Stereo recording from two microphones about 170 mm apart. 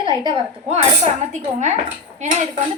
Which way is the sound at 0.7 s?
45° right (ahead or behind).